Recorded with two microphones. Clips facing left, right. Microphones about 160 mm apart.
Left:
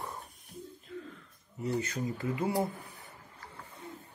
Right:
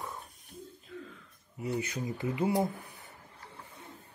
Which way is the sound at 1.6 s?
15° right (ahead or behind).